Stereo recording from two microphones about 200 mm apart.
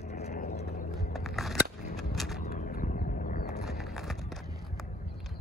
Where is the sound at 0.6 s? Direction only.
45° left (ahead or behind).